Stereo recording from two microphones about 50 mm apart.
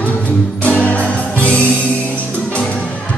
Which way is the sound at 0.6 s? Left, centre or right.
Left.